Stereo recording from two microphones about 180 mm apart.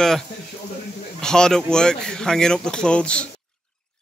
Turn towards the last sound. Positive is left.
turn(degrees=5)  # may be behind; listen again after turning